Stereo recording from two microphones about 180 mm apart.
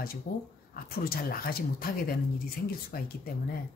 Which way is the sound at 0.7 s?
55° left (ahead or behind).